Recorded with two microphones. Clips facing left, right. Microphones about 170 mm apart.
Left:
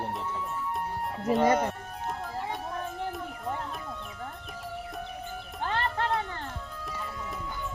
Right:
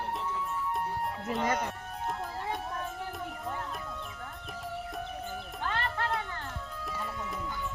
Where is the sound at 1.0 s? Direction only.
Centre (ahead or behind).